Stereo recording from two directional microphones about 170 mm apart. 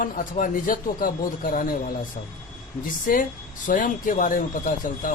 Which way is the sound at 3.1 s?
55° left (ahead or behind).